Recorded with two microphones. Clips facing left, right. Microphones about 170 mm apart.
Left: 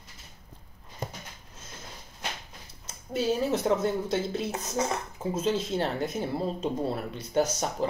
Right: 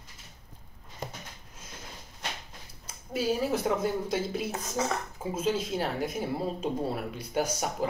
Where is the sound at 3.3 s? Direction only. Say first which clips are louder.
Left 2 dB; 10° right (ahead or behind).